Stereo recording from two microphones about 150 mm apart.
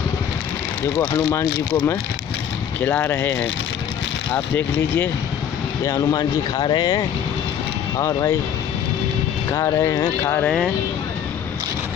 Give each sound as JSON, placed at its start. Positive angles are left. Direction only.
{"t": 0.9, "sound": "speech", "side_deg": 25}
{"t": 2.8, "sound": "speech", "side_deg": 15}
{"t": 4.6, "sound": "speech", "side_deg": 15}
{"t": 9.5, "sound": "speech", "side_deg": 20}
{"t": 10.4, "sound": "speech", "side_deg": 5}